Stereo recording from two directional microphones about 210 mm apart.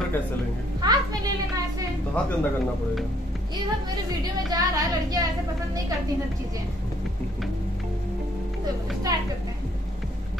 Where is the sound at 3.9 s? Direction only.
20° right (ahead or behind).